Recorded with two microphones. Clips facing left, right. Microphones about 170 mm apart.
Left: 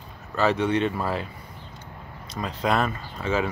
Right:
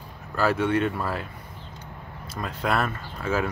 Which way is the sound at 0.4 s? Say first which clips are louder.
Left 1 dB; 5° right (ahead or behind).